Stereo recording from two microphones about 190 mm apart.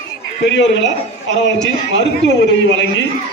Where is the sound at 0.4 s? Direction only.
70° left (ahead or behind).